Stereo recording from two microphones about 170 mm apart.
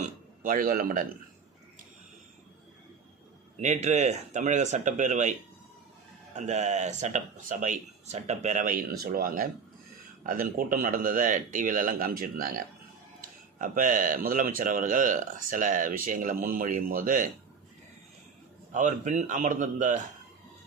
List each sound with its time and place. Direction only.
0.0 s a man's voice: 55° right (ahead or behind)
3.6 s speech: 45° right (ahead or behind)
6.3 s a man's voice: 45° right (ahead or behind)
18.7 s speech: 50° right (ahead or behind)